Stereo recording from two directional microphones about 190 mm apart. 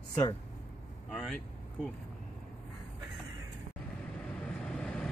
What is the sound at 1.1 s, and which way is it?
Speech, centre (ahead or behind).